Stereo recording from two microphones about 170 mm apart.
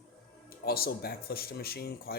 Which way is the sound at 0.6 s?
65° left (ahead or behind).